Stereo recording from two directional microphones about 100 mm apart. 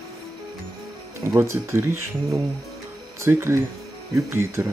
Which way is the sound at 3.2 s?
25° right (ahead or behind).